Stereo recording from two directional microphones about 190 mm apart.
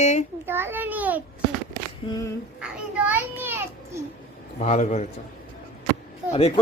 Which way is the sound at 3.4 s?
10° right (ahead or behind).